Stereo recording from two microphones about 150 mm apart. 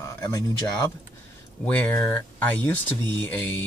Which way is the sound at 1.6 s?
10° left (ahead or behind).